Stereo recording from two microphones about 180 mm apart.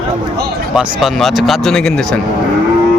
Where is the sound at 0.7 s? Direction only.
Centre (ahead or behind).